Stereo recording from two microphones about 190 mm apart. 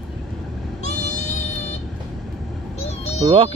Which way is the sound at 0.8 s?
35° left (ahead or behind).